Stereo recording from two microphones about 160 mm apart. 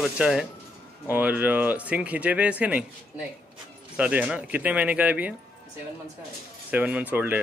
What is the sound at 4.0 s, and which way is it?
Speech, 10° right (ahead or behind).